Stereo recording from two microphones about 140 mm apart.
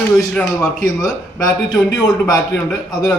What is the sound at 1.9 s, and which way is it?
Speech, 25° left (ahead or behind).